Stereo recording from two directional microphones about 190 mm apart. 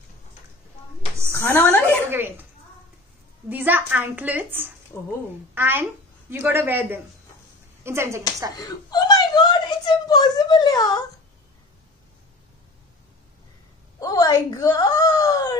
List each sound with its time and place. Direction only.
1.3 s a woman's voice: 10° left (ahead or behind)
2.0 s a woman's voice: 10° right (ahead or behind)
3.4 s a woman's voice: 10° right (ahead or behind)
8.5 s whimper: 20° left (ahead or behind)
13.9 s wail: 20° left (ahead or behind)